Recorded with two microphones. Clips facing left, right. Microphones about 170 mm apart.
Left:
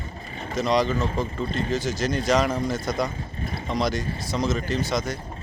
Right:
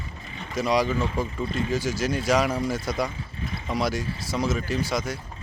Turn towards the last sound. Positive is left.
turn(degrees=-10)  # may be behind; listen again after turning